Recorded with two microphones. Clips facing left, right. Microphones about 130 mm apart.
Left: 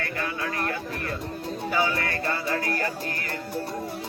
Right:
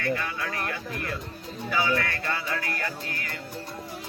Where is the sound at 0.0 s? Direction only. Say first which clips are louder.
Right 1 dB; 40° left (ahead or behind).